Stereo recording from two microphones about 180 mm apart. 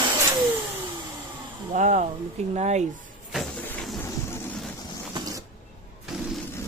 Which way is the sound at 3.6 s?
10° left (ahead or behind).